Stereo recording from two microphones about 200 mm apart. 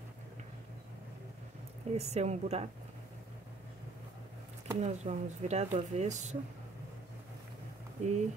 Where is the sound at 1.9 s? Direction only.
35° right (ahead or behind).